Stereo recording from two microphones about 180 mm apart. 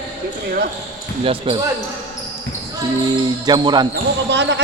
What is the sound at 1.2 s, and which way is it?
Speech, 30° right (ahead or behind).